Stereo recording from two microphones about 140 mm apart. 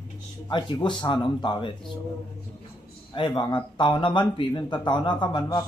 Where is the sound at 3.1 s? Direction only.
35° left (ahead or behind).